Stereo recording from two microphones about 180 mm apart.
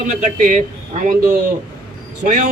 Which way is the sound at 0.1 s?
50° right (ahead or behind).